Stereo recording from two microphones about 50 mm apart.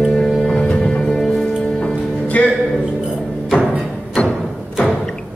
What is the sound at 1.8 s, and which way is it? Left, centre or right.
Music, left.